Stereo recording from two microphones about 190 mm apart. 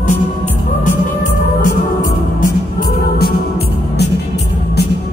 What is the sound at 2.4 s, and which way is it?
Music, 50° left (ahead or behind).